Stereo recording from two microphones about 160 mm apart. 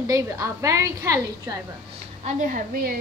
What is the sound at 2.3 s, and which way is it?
Speech, 55° right (ahead or behind).